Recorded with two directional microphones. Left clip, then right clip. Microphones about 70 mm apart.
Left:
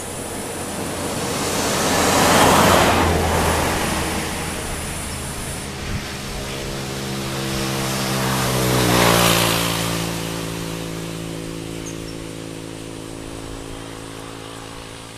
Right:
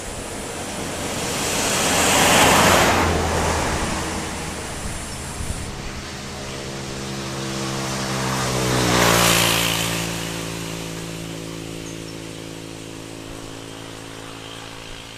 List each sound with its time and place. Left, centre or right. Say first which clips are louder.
0.7 s waves: left 1 dB; right
3.3 s vehicle: left 2 dB; centre
7.3 s vehicle: left 3 dB; left; by 8.6 s centre
8.7 s vehicle: left 1 dB; right